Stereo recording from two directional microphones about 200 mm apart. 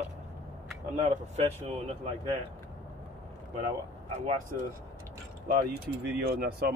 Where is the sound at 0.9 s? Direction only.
35° right (ahead or behind).